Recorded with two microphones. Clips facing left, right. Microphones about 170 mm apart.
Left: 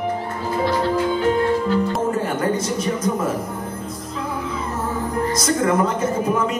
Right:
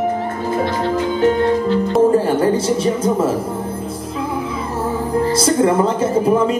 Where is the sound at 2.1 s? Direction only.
30° right (ahead or behind).